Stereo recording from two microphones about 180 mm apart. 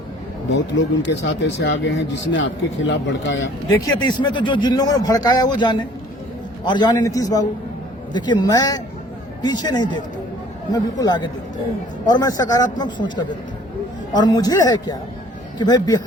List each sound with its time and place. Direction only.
0.5 s speech: 85° left
3.9 s speech: 25° left (ahead or behind)